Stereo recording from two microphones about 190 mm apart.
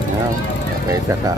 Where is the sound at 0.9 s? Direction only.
15° right (ahead or behind).